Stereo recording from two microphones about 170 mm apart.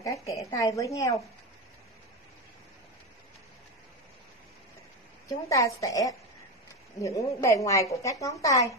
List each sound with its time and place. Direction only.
0.3 s a woman's voice: 20° left (ahead or behind)
5.3 s a woman's voice: 20° left (ahead or behind)